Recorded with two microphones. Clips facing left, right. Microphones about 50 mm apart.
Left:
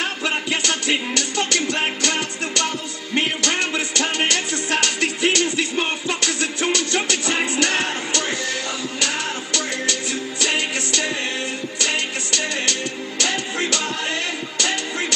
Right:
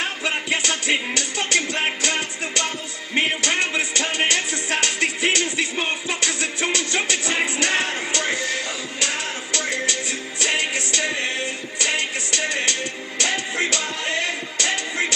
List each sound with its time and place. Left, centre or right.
0.5 s music: right
9.6 s music: right